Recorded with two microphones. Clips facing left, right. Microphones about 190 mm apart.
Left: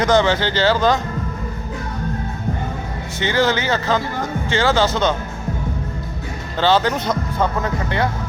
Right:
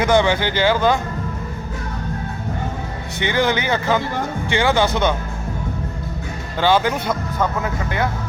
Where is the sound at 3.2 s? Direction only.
15° right (ahead or behind).